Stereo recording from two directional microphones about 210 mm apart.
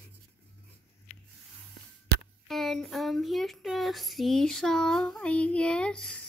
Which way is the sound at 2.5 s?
Centre (ahead or behind).